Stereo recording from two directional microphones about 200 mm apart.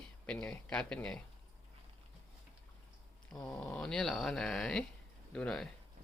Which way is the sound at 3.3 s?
5° left (ahead or behind).